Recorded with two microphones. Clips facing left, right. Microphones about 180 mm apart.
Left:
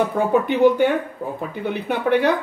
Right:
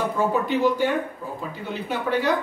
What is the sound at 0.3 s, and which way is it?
Speech, 60° left (ahead or behind).